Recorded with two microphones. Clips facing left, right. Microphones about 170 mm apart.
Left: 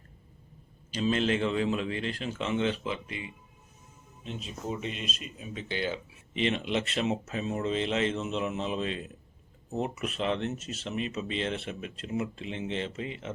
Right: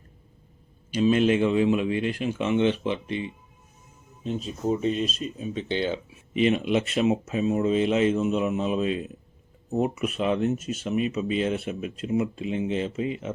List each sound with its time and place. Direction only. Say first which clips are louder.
0.9 s speech: right 7 dB; 15° right (ahead or behind)
4.2 s speech: right 9 dB; 40° right (ahead or behind)
6.4 s speech: right 7 dB; 10° right (ahead or behind)